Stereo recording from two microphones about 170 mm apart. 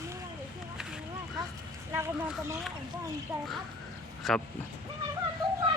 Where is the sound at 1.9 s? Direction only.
15° right (ahead or behind).